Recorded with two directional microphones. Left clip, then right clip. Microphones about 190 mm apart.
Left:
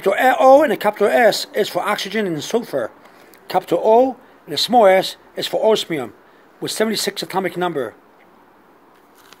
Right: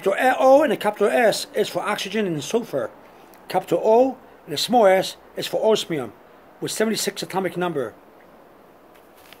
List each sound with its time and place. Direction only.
0.0 s speech: 25° left (ahead or behind)